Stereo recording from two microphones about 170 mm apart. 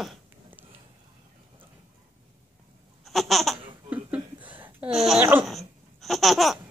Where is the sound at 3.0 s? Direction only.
Centre (ahead or behind).